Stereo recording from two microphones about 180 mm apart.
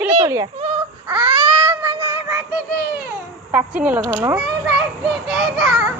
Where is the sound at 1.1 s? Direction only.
25° right (ahead or behind).